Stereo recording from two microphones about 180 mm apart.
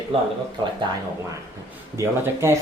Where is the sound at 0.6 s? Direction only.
25° right (ahead or behind).